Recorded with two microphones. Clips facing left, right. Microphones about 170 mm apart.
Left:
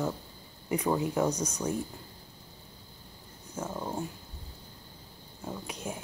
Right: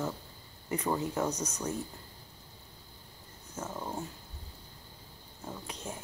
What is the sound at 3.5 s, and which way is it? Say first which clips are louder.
Speech: left 3 dB; 10° left (ahead or behind).